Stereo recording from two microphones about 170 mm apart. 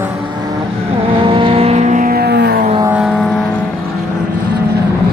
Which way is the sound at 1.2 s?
30° right (ahead or behind).